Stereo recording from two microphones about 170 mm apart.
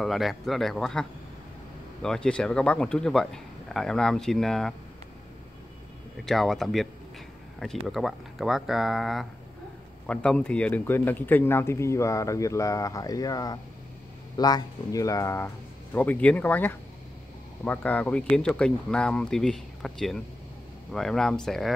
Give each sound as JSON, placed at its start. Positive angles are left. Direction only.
{"t": 0.0, "sound": "speech", "side_deg": 0}
{"t": 6.2, "sound": "a man's voice", "side_deg": 0}